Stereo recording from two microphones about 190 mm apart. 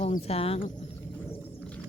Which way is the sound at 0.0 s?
35° left (ahead or behind).